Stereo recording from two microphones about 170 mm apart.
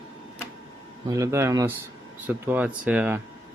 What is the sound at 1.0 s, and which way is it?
Speech, 20° right (ahead or behind).